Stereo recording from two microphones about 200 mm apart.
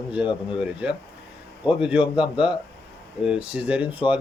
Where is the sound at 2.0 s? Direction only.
25° left (ahead or behind).